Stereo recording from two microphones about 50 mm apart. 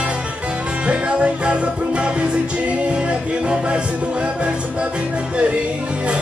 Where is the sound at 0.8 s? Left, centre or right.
Right.